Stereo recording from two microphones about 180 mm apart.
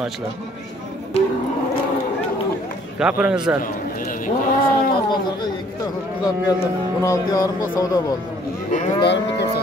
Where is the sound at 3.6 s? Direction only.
50° left (ahead or behind).